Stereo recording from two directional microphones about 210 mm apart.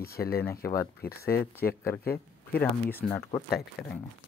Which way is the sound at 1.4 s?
10° left (ahead or behind).